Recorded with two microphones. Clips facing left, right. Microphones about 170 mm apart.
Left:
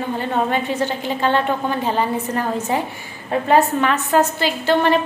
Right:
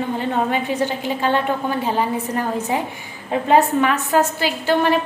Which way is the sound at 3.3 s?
10° right (ahead or behind).